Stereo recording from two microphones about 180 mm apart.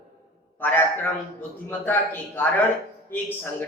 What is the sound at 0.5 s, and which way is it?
A man's voice, 10° left (ahead or behind).